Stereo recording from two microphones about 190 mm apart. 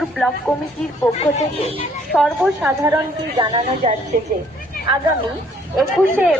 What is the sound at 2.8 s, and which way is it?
A woman's voice, 20° right (ahead or behind).